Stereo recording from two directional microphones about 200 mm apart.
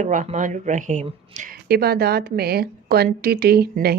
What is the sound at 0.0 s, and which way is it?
Speech, 35° right (ahead or behind).